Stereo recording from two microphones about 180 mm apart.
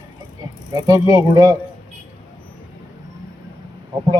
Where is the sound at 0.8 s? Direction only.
20° right (ahead or behind).